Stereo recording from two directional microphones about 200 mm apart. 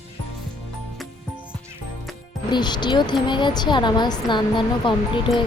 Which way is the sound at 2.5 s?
20° left (ahead or behind).